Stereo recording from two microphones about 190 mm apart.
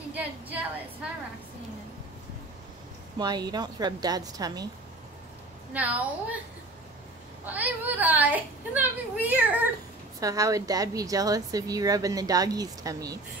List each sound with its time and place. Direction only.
0.1 s a sound: 10° right (ahead or behind)
3.2 s speech: 20° right (ahead or behind)
5.7 s a woman's voice: 5° right (ahead or behind)
7.4 s a woman's voice: 10° right (ahead or behind)